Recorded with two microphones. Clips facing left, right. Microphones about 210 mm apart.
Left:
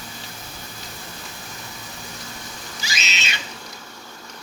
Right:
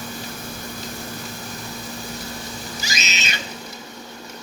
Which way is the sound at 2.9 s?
40° right (ahead or behind).